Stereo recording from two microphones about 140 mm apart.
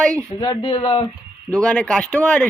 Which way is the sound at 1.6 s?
5° left (ahead or behind).